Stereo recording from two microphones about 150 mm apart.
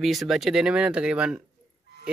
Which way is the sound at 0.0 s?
Centre (ahead or behind).